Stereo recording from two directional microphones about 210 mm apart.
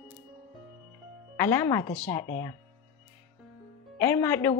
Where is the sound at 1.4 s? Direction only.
10° left (ahead or behind).